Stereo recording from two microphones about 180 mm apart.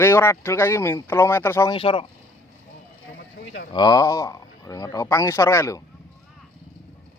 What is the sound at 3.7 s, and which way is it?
A man's voice, 20° left (ahead or behind).